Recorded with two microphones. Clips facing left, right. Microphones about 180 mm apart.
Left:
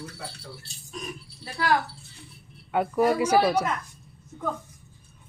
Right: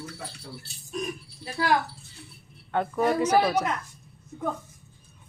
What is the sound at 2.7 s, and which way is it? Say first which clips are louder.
Speech: left 2 dB; 10° left (ahead or behind).